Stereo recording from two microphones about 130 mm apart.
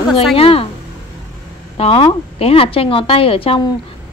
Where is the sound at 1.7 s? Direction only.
45° left (ahead or behind).